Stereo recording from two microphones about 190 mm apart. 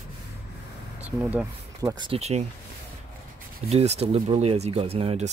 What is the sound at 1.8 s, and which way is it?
Speech, 20° right (ahead or behind).